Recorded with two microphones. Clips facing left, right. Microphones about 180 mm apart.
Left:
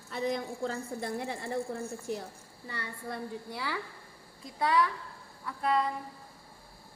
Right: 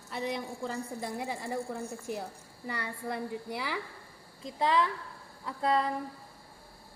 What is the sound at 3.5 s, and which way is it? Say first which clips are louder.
A woman's voice: right 1 dB; 15° right (ahead or behind).